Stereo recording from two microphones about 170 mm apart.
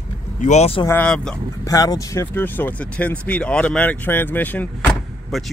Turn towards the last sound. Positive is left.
turn(degrees=0)  # may be behind; listen again after turning